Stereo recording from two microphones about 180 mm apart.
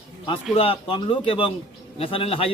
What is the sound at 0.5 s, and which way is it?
A man's voice, 30° left (ahead or behind).